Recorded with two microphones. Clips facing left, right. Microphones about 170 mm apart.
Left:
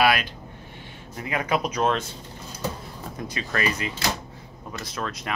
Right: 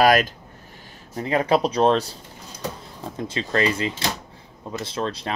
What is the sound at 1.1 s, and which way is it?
Speech, 30° right (ahead or behind).